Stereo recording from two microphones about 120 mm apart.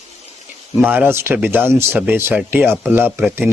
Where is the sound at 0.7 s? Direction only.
15° right (ahead or behind).